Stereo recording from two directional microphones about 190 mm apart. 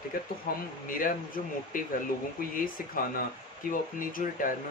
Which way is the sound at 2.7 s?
45° left (ahead or behind).